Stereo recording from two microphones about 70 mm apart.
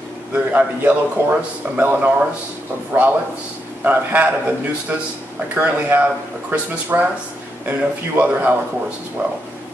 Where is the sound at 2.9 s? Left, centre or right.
Right.